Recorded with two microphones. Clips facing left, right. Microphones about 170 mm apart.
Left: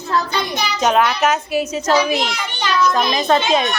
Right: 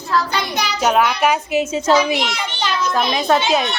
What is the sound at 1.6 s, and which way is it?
Speech, 25° right (ahead or behind).